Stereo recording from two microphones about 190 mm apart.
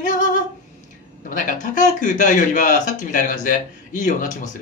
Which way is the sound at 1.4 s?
40° left (ahead or behind).